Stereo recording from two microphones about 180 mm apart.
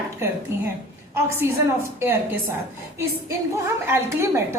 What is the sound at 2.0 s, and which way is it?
Speech, 15° right (ahead or behind).